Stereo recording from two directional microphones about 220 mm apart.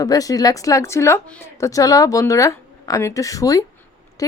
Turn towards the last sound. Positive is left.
turn(degrees=15)  # may be behind; listen again after turning